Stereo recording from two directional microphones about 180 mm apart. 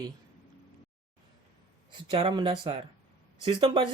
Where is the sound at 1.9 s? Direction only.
25° right (ahead or behind).